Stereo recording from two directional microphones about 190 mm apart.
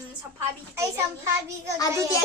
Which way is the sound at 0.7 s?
15° right (ahead or behind).